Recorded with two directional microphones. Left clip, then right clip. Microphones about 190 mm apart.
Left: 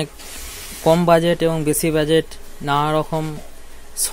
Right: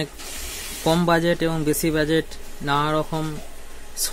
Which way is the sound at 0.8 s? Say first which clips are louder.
Left 5 dB; 15° left (ahead or behind).